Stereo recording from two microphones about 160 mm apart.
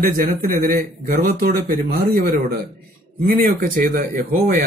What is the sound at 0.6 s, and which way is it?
A man's voice, 75° right (ahead or behind).